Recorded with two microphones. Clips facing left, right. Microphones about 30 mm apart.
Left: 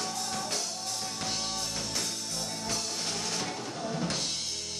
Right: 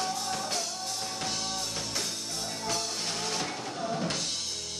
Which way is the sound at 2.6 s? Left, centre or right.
Centre.